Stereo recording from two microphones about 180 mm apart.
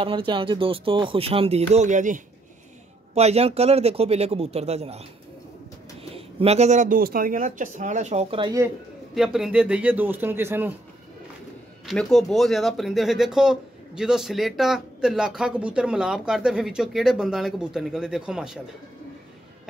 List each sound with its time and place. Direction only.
0.0 s speech: 30° right (ahead or behind)
6.1 s speech: 35° right (ahead or behind)
9.1 s a man's voice: centre (ahead or behind)
11.8 s speech: centre (ahead or behind)